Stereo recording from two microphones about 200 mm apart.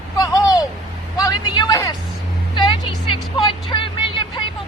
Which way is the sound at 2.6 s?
25° left (ahead or behind).